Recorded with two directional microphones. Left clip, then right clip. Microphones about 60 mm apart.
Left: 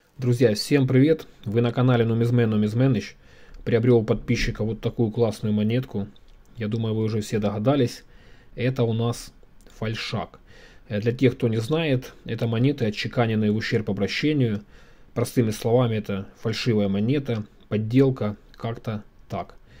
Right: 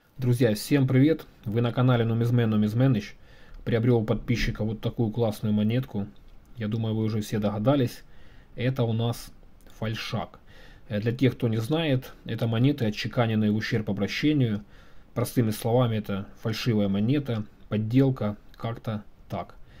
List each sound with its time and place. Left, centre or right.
0.2 s speech: left
12.4 s speech: centre